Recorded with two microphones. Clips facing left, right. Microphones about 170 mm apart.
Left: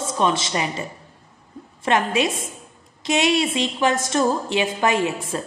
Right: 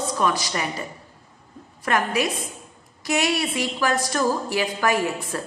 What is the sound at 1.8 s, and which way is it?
A woman's voice, 25° left (ahead or behind).